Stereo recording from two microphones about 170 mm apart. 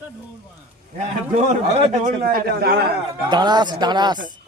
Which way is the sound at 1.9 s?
50° right (ahead or behind).